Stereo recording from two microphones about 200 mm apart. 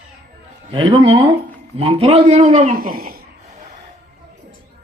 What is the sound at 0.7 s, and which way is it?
A man's voice, 25° right (ahead or behind).